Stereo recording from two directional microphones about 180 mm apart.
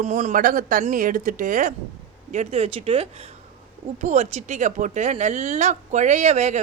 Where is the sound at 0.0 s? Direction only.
40° right (ahead or behind).